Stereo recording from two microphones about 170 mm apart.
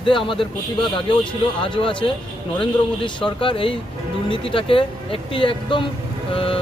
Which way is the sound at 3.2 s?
30° left (ahead or behind).